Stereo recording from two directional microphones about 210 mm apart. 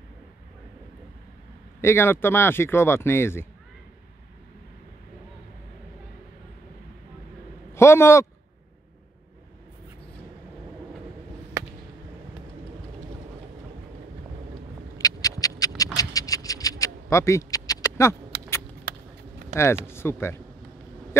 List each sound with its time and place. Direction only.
1.8 s speech: 10° left (ahead or behind)
7.7 s a man's voice: 10° left (ahead or behind)
15.0 s rodents: 15° left (ahead or behind)
15.8 s a sound: 15° left (ahead or behind)
18.3 s vehicle: 50° right (ahead or behind)
18.9 s a sound: 45° right (ahead or behind)
19.5 s speech: 10° left (ahead or behind)